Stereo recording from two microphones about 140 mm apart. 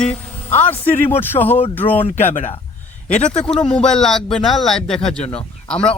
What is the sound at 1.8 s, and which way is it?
Speech, 40° left (ahead or behind).